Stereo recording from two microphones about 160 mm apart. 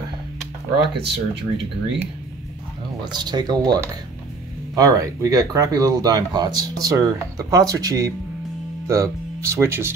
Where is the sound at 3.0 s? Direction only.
25° right (ahead or behind).